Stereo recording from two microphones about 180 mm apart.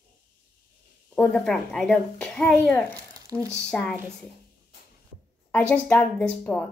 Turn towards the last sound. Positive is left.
turn(degrees=5)  # may be behind; listen again after turning